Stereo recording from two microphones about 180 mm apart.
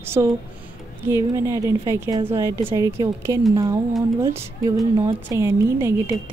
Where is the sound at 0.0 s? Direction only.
15° right (ahead or behind).